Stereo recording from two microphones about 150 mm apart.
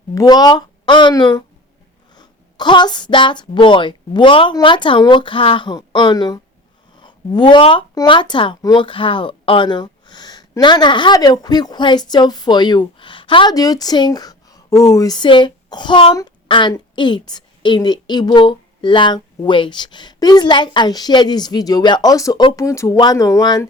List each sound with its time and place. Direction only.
0.1 s a woman's voice: 25° left (ahead or behind)